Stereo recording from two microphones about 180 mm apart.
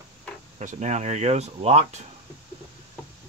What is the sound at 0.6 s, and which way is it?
Speech, 40° right (ahead or behind).